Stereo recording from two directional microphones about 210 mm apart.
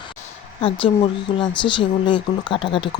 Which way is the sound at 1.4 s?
25° left (ahead or behind).